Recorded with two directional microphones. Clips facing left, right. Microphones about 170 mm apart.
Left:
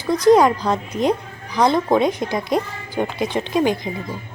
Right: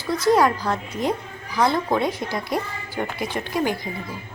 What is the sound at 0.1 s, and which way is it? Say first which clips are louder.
A woman's voice: left 5 dB; 20° left (ahead or behind).